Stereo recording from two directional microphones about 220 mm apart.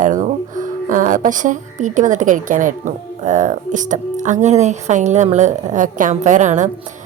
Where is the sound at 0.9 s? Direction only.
35° right (ahead or behind).